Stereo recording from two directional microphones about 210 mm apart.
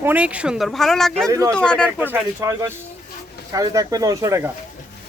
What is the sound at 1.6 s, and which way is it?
Speech, 5° left (ahead or behind).